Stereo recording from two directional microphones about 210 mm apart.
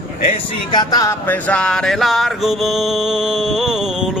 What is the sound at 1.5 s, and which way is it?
Music, 5° left (ahead or behind).